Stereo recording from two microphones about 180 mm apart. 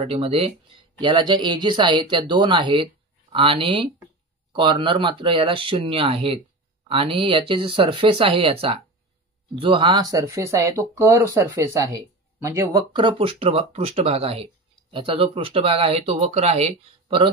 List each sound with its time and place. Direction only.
0.0 s speech: 35° right (ahead or behind); by 12.8 s 15° right (ahead or behind)
12.9 s speech: 30° right (ahead or behind)